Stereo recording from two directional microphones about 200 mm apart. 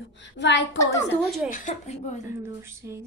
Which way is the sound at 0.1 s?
60° left (ahead or behind).